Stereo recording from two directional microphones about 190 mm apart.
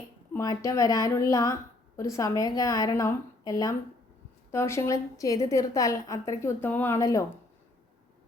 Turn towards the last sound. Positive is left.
turn(degrees=15)  # may be behind; listen again after turning